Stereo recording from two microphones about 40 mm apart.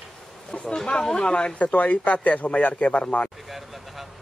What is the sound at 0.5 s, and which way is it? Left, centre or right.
Speech, left.